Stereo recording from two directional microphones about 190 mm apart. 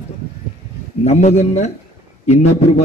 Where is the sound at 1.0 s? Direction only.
35° left (ahead or behind).